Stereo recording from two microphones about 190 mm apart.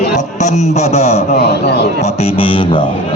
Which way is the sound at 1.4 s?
60° left (ahead or behind).